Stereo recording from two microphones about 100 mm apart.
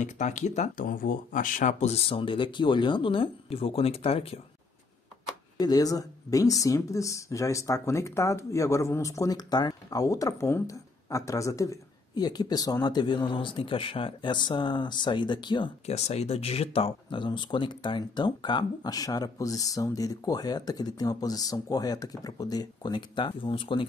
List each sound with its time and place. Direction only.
1.9 s speech: 70° left (ahead or behind)
5.6 s speech: 40° left (ahead or behind)
15.9 s speech: 90° left; by 23.9 s 60° left (ahead or behind)